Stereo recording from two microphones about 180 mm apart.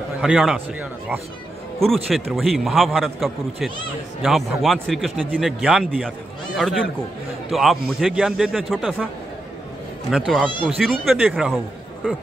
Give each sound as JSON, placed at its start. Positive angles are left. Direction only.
{"t": 0.2, "sound": "a man's voice", "side_deg": 0}
{"t": 2.0, "sound": "a man's voice", "side_deg": 0}
{"t": 10.1, "sound": "a man's voice", "side_deg": 0}